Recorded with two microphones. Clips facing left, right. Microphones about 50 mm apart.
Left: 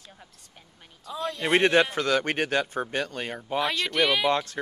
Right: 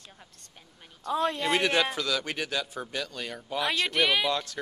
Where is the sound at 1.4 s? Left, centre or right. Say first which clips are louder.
Left 9 dB; left.